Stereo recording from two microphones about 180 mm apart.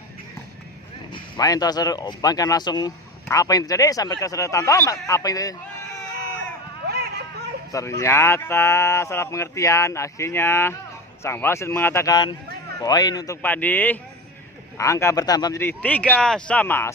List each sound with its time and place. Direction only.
1.1 s speech: 20° left (ahead or behind)
6.8 s a sound: 65° right (ahead or behind)
7.7 s speech: 15° left (ahead or behind)